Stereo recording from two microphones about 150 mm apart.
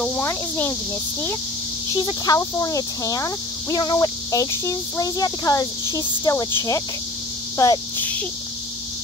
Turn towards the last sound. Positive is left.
turn(degrees=20)  # may be behind; listen again after turning